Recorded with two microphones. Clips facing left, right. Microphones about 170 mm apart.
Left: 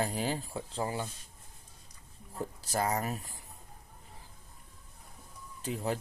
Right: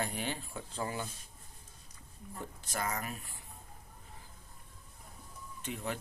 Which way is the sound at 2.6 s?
35° left (ahead or behind).